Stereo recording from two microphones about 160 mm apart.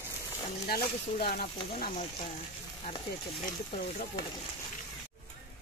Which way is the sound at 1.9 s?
35° left (ahead or behind).